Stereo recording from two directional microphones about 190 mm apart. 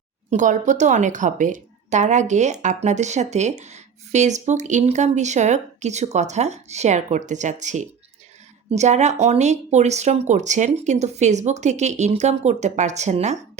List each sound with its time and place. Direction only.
0.3 s a woman's voice: 40° right (ahead or behind)